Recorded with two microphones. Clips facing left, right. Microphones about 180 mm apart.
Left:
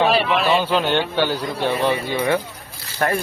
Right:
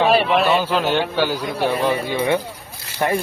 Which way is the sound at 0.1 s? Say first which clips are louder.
Right 3 dB; 55° right (ahead or behind).